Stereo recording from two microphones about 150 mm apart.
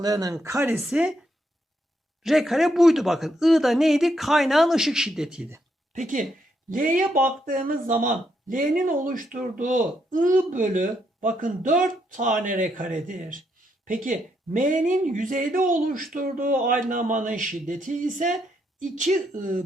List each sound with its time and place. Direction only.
0.0 s speech: 25° right (ahead or behind)
0.8 s speech: 5° right (ahead or behind)
2.2 s speech: centre (ahead or behind)
5.9 s speech: 55° right (ahead or behind)